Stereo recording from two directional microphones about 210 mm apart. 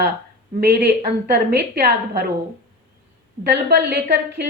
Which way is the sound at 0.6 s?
50° right (ahead or behind).